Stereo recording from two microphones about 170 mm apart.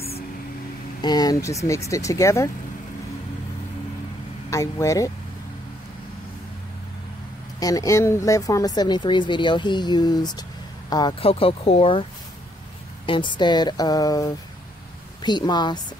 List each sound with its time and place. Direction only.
1.0 s speech: 25° left (ahead or behind)
4.5 s speech: 20° left (ahead or behind)
7.6 s speech: 20° left (ahead or behind)